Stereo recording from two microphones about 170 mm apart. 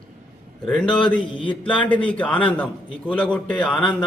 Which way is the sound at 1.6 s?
10° left (ahead or behind).